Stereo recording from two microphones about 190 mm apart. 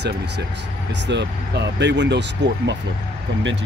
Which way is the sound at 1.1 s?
65° right (ahead or behind).